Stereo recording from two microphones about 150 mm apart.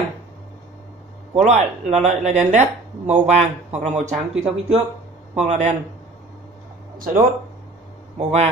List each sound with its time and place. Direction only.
1.3 s speech: 50° right (ahead or behind)
8.2 s speech: 45° right (ahead or behind)